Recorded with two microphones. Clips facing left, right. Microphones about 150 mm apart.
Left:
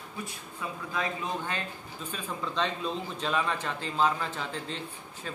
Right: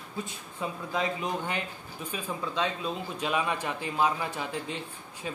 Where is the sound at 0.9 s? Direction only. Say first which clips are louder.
Right 2 dB; 20° right (ahead or behind).